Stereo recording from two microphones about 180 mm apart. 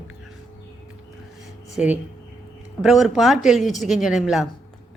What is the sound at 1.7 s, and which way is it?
Speech, 10° right (ahead or behind).